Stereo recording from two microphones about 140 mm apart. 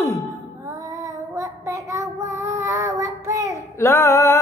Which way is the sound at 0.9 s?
25° right (ahead or behind).